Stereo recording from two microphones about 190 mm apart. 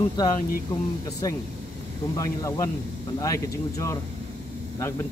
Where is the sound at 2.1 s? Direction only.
15° left (ahead or behind).